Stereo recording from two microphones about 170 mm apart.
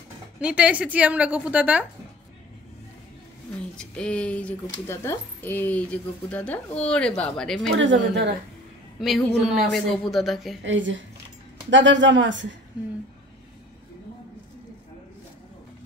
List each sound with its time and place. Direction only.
0.4 s a woman's voice: 5° right (ahead or behind)
3.7 s a woman's voice: 5° left (ahead or behind)
7.7 s speech: 90° right
9.0 s a woman's voice: centre (ahead or behind)
10.6 s speech: 90° right